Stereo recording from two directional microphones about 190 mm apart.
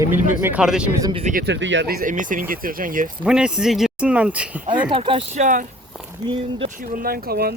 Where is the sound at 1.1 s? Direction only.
40° right (ahead or behind).